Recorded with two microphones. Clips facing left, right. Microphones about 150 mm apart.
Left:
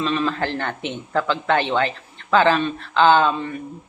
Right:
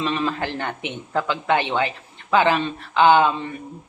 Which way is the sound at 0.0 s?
15° right (ahead or behind).